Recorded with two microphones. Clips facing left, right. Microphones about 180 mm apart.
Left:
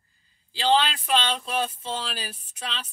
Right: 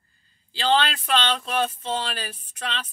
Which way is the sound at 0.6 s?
10° left (ahead or behind).